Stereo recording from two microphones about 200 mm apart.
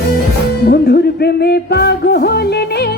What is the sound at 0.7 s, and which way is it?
Music, 50° left (ahead or behind).